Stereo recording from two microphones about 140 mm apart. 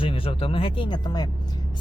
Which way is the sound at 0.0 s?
40° left (ahead or behind).